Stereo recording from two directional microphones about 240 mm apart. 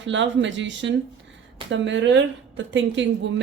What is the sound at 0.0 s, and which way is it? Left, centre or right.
A woman's voice, right.